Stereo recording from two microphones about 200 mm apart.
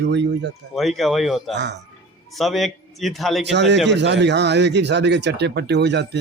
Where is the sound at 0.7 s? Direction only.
Centre (ahead or behind).